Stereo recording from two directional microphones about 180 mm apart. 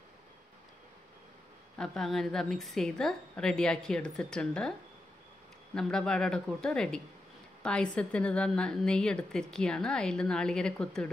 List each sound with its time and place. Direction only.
1.8 s a woman's voice: centre (ahead or behind)
5.8 s a woman's voice: 5° left (ahead or behind)